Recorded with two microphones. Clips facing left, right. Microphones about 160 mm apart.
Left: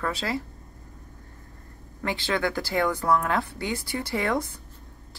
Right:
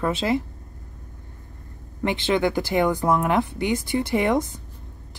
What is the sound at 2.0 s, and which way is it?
Speech, 20° right (ahead or behind).